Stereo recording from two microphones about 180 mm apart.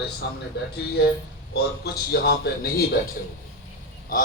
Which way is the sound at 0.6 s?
65° left (ahead or behind).